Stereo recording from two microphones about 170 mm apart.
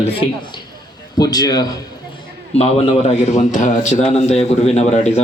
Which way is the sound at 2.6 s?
40° left (ahead or behind).